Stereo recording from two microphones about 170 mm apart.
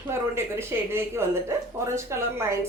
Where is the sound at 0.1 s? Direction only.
15° right (ahead or behind).